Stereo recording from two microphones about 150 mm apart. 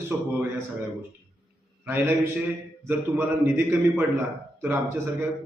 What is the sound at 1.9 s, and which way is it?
A man's voice, 15° right (ahead or behind).